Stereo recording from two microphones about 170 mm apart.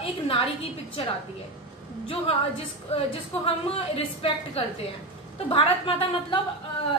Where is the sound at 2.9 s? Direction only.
35° left (ahead or behind).